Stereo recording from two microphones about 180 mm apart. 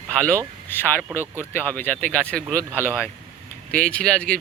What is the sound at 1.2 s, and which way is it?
Speech, 15° right (ahead or behind).